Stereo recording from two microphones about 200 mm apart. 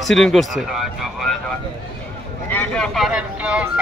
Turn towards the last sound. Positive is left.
turn(degrees=-5)  # may be behind; listen again after turning